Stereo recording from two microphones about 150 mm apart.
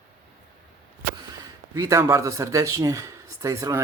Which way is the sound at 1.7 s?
20° right (ahead or behind).